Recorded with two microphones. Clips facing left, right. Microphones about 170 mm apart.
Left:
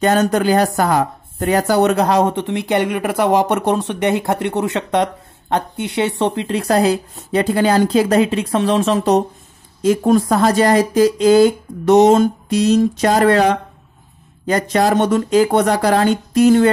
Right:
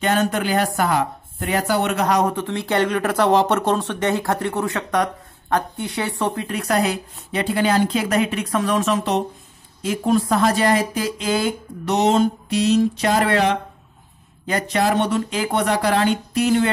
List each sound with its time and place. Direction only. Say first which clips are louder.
0.0 s speech: left 5 dB; 40° left (ahead or behind)